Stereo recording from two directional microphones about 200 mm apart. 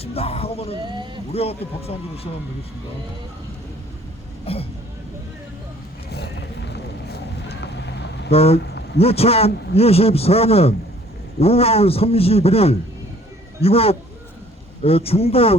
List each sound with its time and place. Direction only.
0.0 s speech: 30° left (ahead or behind)
0.8 s speech: 25° right (ahead or behind)
1.3 s a man's voice: 30° left (ahead or behind)
4.5 s speech: 30° left (ahead or behind)
6.1 s a sound: 55° left (ahead or behind)
6.7 s vehicle: 55° left (ahead or behind)
8.3 s a man's voice: 30° left (ahead or behind)